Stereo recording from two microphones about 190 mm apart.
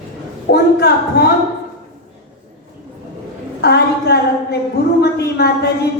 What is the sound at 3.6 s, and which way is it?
A woman's voice, 60° left (ahead or behind).